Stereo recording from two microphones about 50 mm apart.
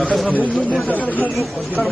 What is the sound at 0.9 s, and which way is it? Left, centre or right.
Speech, left.